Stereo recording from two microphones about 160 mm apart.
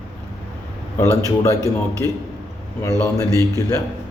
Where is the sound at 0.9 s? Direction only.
20° left (ahead or behind).